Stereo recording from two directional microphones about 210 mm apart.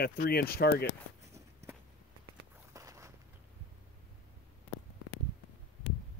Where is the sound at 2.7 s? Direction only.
15° right (ahead or behind).